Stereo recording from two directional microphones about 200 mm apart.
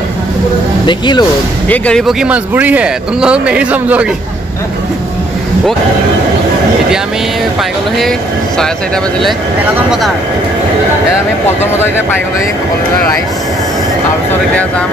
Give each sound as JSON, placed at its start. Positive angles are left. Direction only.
{"t": 0.8, "sound": "speech", "side_deg": 20}
{"t": 1.7, "sound": "a man's voice", "side_deg": 5}
{"t": 8.5, "sound": "a man's voice", "side_deg": 5}